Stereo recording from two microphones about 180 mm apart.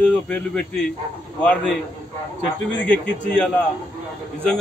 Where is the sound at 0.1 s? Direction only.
5° left (ahead or behind).